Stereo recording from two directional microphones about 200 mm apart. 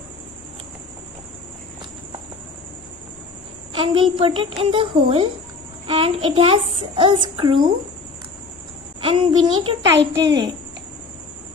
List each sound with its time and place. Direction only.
3.7 s a child's voice: 25° right (ahead or behind)
9.0 s a child's voice: 25° right (ahead or behind)
9.9 s a child's voice: 60° right (ahead or behind)